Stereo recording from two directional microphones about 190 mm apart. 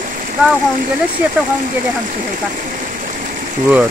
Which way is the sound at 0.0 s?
45° right (ahead or behind).